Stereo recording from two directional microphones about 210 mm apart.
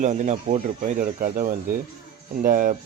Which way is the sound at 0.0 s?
35° right (ahead or behind).